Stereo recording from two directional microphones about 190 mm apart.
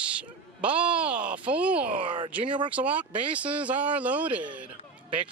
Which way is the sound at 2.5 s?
25° right (ahead or behind).